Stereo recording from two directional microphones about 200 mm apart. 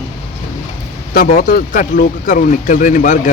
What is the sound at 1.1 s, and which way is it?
Speech, 45° left (ahead or behind).